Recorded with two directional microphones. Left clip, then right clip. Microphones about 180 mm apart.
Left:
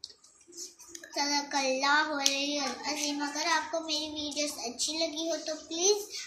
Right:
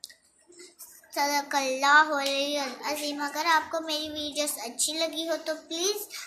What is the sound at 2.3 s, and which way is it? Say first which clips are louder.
A child's voice: right 3 dB; 15° right (ahead or behind).